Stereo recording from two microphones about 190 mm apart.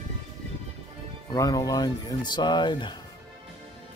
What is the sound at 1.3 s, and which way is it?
Speech, 20° left (ahead or behind).